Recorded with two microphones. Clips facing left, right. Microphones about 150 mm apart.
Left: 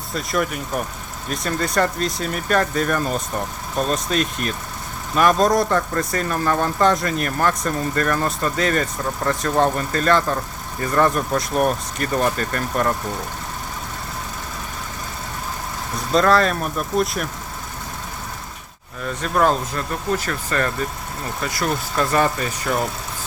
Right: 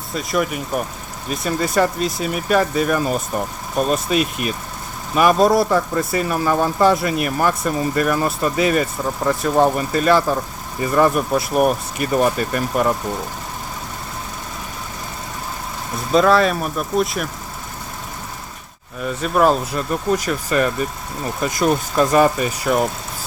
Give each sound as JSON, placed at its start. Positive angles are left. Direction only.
{"t": 0.1, "sound": "speech", "side_deg": 0}
{"t": 16.1, "sound": "speech", "side_deg": -5}
{"t": 19.0, "sound": "speech", "side_deg": -10}